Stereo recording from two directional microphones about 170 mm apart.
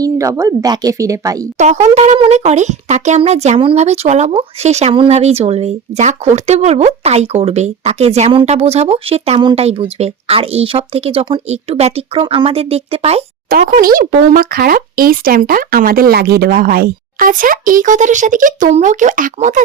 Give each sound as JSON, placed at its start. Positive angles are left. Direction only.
{"t": 0.0, "sound": "a woman's voice", "side_deg": -20}
{"t": 1.5, "sound": "speech", "side_deg": -45}
{"t": 13.7, "sound": "speech", "side_deg": -55}